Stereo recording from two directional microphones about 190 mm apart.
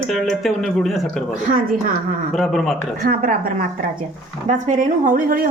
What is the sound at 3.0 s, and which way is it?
A woman's voice, 45° right (ahead or behind).